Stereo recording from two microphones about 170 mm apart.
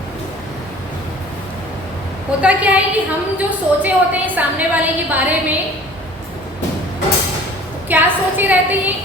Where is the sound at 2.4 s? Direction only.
10° right (ahead or behind).